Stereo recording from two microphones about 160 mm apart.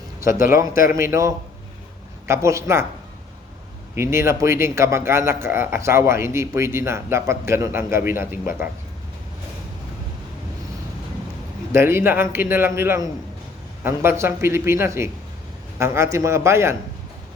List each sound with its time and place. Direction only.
0.3 s speech: 55° left (ahead or behind)
0.9 s speech: 15° right (ahead or behind)
3.9 s speech: 15° right (ahead or behind)
11.7 s speech: 15° right (ahead or behind)